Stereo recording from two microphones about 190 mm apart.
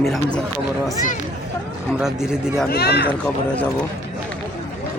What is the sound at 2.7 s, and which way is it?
Speech, 60° left (ahead or behind).